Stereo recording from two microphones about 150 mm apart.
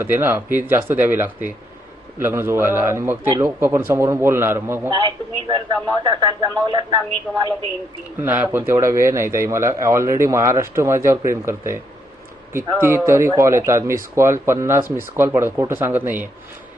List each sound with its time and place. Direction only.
0.0 s speech: 15° right (ahead or behind)
4.9 s a man's voice: 35° right (ahead or behind)
8.2 s speech: 15° right (ahead or behind)